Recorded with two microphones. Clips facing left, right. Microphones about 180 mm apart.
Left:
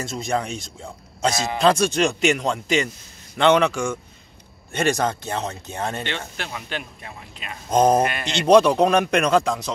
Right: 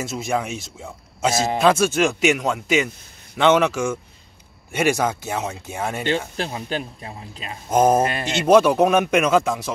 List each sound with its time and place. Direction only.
0.0 s speech: 5° right (ahead or behind)
6.3 s speech: 35° right (ahead or behind)
7.7 s speech: 5° right (ahead or behind)
8.0 s speech: 25° right (ahead or behind)
8.4 s speech: 5° right (ahead or behind)